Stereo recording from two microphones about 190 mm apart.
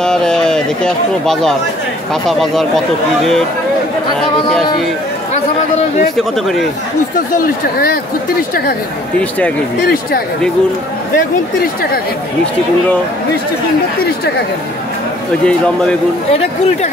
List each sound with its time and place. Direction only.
0.0 s speech: 5° left (ahead or behind)
6.1 s speech: centre (ahead or behind)
9.8 s speech: 55° left (ahead or behind)
15.4 s speech: 5° left (ahead or behind)
16.3 s speech: 35° left (ahead or behind)